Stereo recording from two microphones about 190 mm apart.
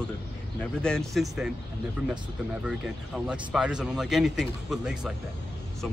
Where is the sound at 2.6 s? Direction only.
5° right (ahead or behind).